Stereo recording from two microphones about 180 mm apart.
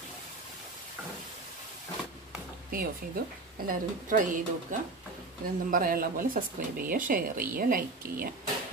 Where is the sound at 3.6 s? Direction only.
45° right (ahead or behind).